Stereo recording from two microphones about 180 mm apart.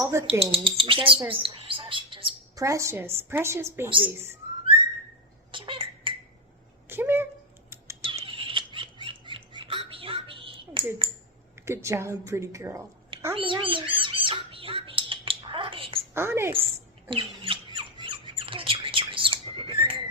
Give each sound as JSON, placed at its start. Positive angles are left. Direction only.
{"t": 0.0, "sound": "a woman's voice", "side_deg": -15}
{"t": 0.3, "sound": "speech", "side_deg": -30}
{"t": 1.3, "sound": "a sound", "side_deg": -30}
{"t": 2.6, "sound": "a woman's voice", "side_deg": -15}
{"t": 5.5, "sound": "cough", "side_deg": -30}
{"t": 6.8, "sound": "a sound", "side_deg": -10}
{"t": 8.0, "sound": "squawk", "side_deg": -30}
{"t": 11.6, "sound": "a woman's voice", "side_deg": -15}
{"t": 13.3, "sound": "squawk", "side_deg": -30}
{"t": 16.1, "sound": "a woman's voice", "side_deg": -15}
{"t": 17.1, "sound": "squawk", "side_deg": -30}